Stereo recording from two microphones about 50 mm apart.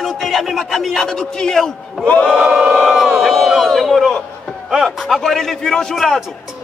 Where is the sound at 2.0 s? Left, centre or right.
Left.